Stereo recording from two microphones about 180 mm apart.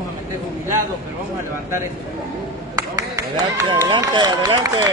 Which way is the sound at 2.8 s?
20° right (ahead or behind).